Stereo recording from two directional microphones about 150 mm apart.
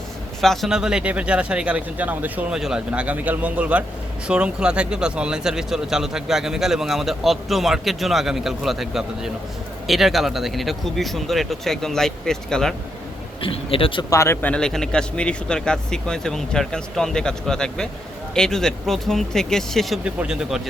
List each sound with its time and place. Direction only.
0.4 s speech: centre (ahead or behind)
13.4 s speech: 40° left (ahead or behind)
14.1 s speech: 20° left (ahead or behind)
14.5 s speech: 5° left (ahead or behind)